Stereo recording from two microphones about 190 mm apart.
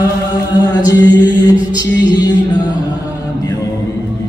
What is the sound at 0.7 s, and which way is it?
Chant, 20° left (ahead or behind).